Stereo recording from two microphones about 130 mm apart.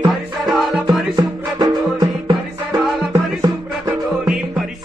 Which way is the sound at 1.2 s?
30° right (ahead or behind).